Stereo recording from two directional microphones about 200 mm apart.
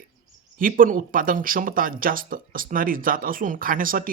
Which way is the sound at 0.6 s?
40° right (ahead or behind).